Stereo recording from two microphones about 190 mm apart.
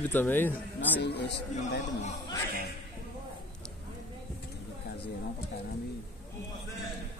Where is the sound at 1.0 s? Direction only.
60° left (ahead or behind).